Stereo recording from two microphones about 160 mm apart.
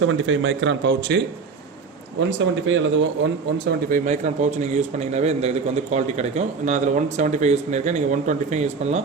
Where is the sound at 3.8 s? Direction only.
50° right (ahead or behind).